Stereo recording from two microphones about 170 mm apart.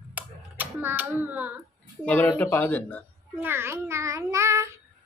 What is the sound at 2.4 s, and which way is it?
A woman's voice, 10° left (ahead or behind).